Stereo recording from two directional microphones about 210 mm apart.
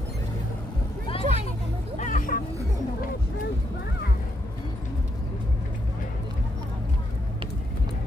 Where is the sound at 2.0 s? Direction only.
40° left (ahead or behind).